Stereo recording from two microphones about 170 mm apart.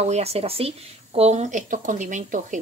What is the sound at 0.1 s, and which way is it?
Speech, 35° right (ahead or behind).